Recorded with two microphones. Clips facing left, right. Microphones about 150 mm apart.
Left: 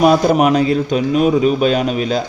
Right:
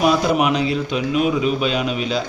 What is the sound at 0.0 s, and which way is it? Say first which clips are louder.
A man's voice: left 5 dB; 45° left (ahead or behind).